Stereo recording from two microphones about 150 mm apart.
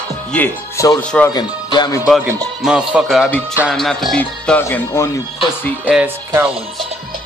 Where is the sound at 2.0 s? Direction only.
5° right (ahead or behind).